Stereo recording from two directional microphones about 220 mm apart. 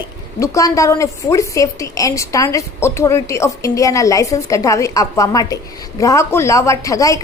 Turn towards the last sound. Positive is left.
turn(degrees=15)  # may be behind; listen again after turning